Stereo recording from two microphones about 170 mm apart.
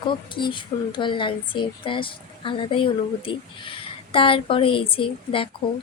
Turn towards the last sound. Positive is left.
turn(degrees=30)  # may be behind; listen again after turning